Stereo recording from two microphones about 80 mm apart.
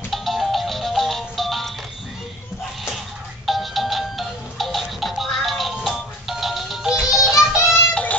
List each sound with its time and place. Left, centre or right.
0.1 s music: centre
3.4 s music: centre
7.9 s music: centre